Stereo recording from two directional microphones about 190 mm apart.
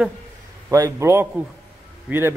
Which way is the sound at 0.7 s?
15° right (ahead or behind).